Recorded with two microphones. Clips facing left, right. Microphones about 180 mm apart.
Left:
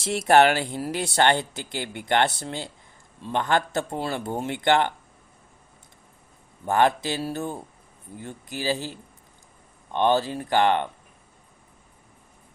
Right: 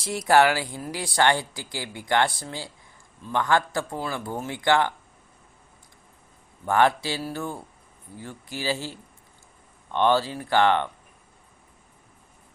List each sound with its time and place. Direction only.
0.0 s speech: 25° left (ahead or behind)
6.7 s speech: 20° left (ahead or behind)